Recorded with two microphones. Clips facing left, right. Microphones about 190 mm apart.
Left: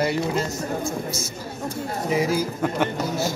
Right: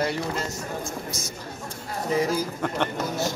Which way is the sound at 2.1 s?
10° left (ahead or behind).